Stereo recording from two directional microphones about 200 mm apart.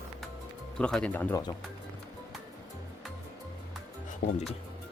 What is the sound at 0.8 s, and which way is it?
Speech, 5° left (ahead or behind).